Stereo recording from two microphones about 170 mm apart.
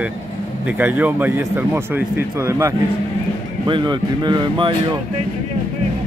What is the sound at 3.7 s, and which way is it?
Speech, 25° right (ahead or behind).